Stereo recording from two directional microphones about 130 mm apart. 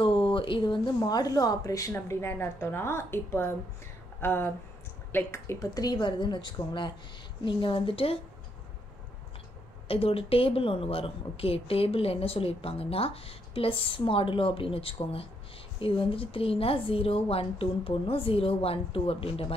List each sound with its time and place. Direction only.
0.0 s a woman's voice: 40° left (ahead or behind)
9.8 s speech: 45° left (ahead or behind)